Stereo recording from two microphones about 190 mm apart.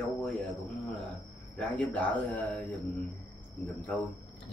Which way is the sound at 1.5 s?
5° left (ahead or behind).